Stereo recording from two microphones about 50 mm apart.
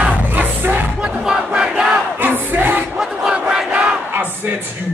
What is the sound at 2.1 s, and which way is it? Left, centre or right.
Crowd, right.